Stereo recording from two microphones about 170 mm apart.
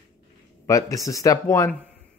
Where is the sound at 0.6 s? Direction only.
20° left (ahead or behind).